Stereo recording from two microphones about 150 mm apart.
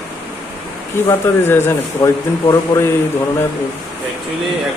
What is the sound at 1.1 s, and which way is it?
A man's voice, 15° left (ahead or behind).